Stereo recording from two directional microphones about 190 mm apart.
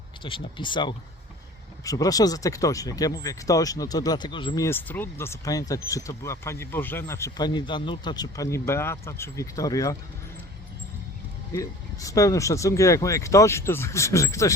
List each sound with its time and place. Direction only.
0.2 s speech: 25° left (ahead or behind)
11.5 s speech: 15° left (ahead or behind)